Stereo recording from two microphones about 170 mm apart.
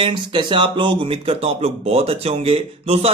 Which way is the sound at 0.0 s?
30° right (ahead or behind).